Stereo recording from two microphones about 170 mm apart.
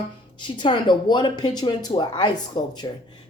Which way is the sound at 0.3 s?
30° left (ahead or behind).